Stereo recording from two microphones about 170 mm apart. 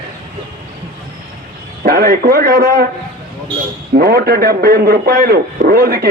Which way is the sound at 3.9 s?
65° right (ahead or behind).